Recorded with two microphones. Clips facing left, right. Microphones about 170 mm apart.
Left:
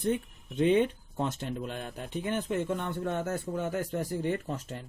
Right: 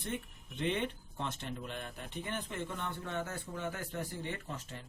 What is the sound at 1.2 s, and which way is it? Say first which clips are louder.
A man's voice: left 8 dB; 40° left (ahead or behind).